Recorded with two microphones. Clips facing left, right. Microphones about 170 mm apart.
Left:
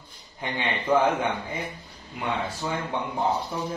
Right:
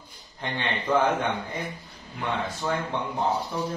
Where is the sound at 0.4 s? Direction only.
10° left (ahead or behind).